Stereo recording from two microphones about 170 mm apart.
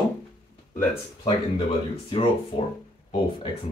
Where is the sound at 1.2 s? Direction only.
35° left (ahead or behind).